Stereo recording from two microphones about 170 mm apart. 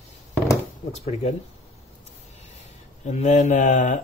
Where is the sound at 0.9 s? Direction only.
40° left (ahead or behind).